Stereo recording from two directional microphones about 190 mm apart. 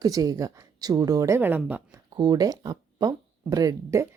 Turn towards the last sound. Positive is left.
turn(degrees=-15)  # may be behind; listen again after turning